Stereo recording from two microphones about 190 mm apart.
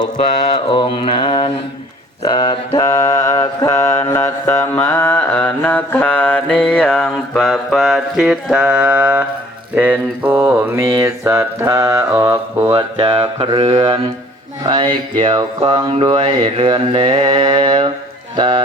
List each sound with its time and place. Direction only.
0.0 s mantra: 35° left (ahead or behind); by 12.7 s 15° right (ahead or behind)
12.7 s mantra: 25° right (ahead or behind)